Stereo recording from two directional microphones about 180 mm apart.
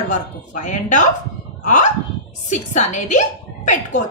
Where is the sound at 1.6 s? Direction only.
45° left (ahead or behind).